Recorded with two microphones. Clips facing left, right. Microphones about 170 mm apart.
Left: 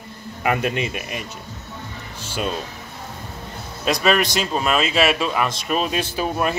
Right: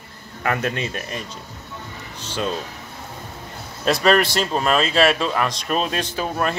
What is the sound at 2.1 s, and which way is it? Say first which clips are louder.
Music: even; 10° left (ahead or behind).